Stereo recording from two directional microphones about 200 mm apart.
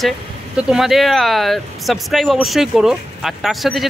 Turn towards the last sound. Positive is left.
turn(degrees=0)  # may be behind; listen again after turning